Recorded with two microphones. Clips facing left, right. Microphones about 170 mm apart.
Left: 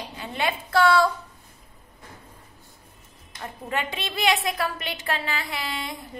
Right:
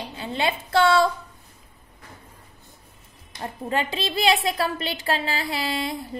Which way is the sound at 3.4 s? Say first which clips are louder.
Right 3 dB; 30° right (ahead or behind).